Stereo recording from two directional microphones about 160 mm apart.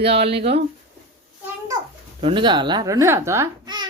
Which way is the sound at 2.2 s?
30° right (ahead or behind).